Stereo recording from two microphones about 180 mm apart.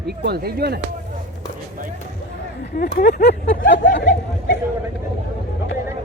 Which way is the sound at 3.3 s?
80° left.